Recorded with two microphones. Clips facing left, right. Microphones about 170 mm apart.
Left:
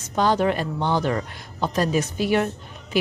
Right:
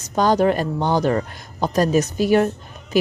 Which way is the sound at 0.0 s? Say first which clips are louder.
Right 3 dB; 40° right (ahead or behind).